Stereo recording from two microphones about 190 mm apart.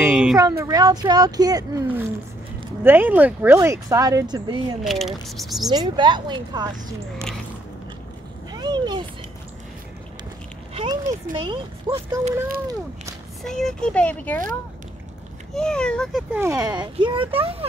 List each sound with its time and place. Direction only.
0.0 s speech: centre (ahead or behind)
0.4 s speech: 20° right (ahead or behind)
4.8 s speech: centre (ahead or behind)
5.7 s speech: 20° right (ahead or behind)
8.5 s a sound: 20° right (ahead or behind)
10.7 s speech: 30° right (ahead or behind)
13.4 s speech: centre (ahead or behind)
15.5 s speech: 5° left (ahead or behind)
16.3 s speech: 15° right (ahead or behind)